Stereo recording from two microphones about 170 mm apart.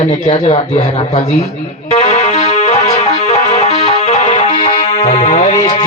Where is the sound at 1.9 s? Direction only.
40° left (ahead or behind).